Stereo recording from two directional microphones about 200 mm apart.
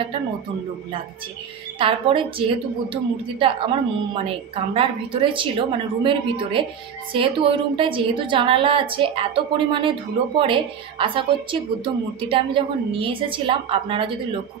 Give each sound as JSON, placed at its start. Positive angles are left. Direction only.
{"t": 1.8, "sound": "a woman's voice", "side_deg": -25}